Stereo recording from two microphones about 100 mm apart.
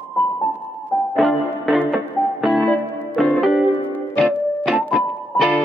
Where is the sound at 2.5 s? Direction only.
10° left (ahead or behind).